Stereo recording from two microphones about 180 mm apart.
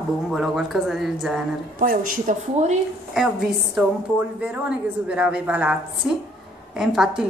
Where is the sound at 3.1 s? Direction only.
Centre (ahead or behind).